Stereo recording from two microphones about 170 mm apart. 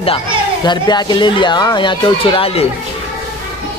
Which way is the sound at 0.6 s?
25° left (ahead or behind).